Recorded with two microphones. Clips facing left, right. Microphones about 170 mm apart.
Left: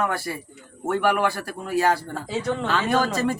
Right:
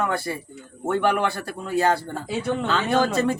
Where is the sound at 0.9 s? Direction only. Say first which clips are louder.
Even; 30° right (ahead or behind).